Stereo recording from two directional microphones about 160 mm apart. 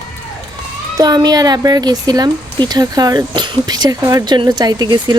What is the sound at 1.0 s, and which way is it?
Speech, 25° right (ahead or behind).